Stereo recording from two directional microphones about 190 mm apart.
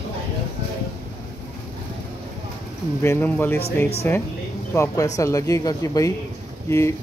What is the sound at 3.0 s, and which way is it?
Speech, 10° left (ahead or behind).